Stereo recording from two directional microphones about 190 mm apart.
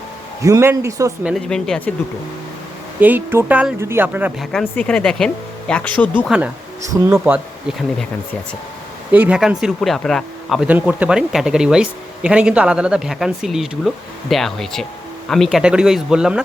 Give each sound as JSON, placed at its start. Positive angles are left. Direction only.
{"t": 0.4, "sound": "speech", "side_deg": -15}
{"t": 1.2, "sound": "speech", "side_deg": 0}
{"t": 3.0, "sound": "speech", "side_deg": -10}
{"t": 4.5, "sound": "speech", "side_deg": 5}
{"t": 6.9, "sound": "speech", "side_deg": -10}
{"t": 9.1, "sound": "speech", "side_deg": -5}